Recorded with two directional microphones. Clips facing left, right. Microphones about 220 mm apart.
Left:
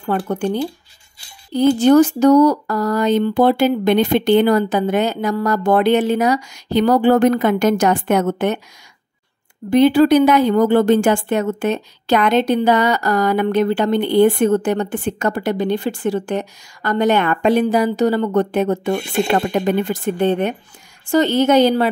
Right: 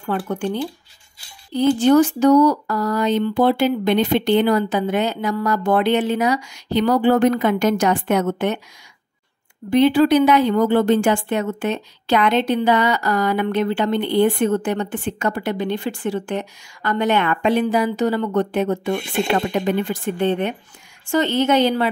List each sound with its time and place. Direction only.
0.0 s a woman's voice: 40° left (ahead or behind)
1.5 s speech: 45° left (ahead or behind)
9.7 s a woman's voice: 40° left (ahead or behind)